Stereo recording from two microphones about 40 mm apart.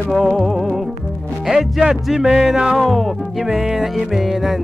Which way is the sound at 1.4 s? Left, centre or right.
Centre.